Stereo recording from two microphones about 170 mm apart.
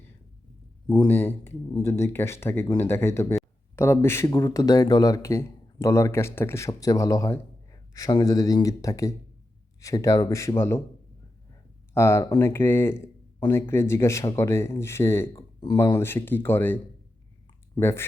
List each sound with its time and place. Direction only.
0.9 s a man's voice: 15° left (ahead or behind)
11.9 s speech: 15° left (ahead or behind)